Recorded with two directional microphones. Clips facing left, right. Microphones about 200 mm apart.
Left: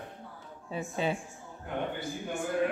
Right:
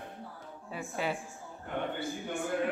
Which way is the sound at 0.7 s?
20° left (ahead or behind).